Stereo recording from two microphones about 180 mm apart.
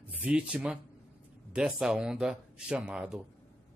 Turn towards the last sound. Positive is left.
turn(degrees=-5)  # may be behind; listen again after turning